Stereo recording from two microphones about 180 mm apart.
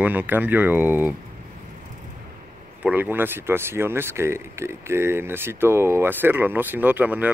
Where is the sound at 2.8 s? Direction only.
10° right (ahead or behind).